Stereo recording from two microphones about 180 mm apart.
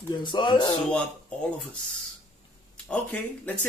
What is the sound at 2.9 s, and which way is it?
Speech, 10° left (ahead or behind).